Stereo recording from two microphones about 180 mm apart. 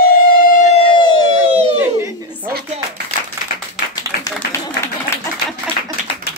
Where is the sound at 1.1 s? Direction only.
25° left (ahead or behind).